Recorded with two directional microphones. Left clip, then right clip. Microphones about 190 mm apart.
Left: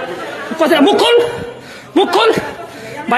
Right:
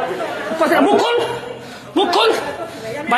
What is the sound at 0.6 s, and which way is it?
A man's voice, 50° left (ahead or behind).